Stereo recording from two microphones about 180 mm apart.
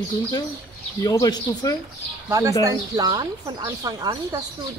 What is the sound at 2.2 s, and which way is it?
Speech, 20° right (ahead or behind).